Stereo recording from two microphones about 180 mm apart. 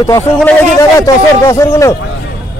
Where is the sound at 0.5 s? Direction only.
10° left (ahead or behind).